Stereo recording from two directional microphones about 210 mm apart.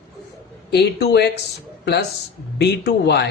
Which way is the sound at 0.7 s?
50° left (ahead or behind).